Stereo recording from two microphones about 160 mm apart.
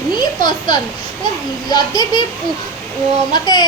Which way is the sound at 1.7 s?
25° left (ahead or behind).